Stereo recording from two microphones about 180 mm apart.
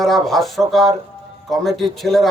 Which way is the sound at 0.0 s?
Centre (ahead or behind).